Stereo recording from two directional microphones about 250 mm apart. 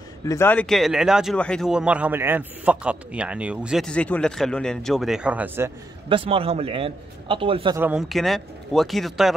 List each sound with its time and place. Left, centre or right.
0.3 s speech: centre
6.0 s a man's voice: right
7.8 s speech: centre